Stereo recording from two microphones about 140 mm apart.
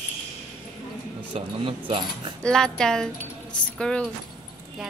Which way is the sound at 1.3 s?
40° right (ahead or behind).